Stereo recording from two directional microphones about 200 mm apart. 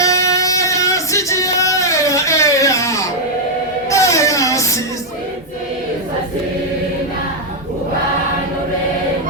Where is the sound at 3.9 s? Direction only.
15° left (ahead or behind).